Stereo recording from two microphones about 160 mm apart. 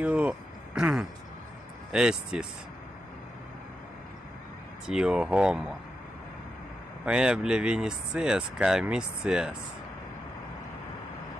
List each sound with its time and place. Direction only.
0.0 s a sound: 10° right (ahead or behind)
1.9 s speech: 5° right (ahead or behind)
4.8 s speech: 5° right (ahead or behind)
7.1 s speech: 5° right (ahead or behind)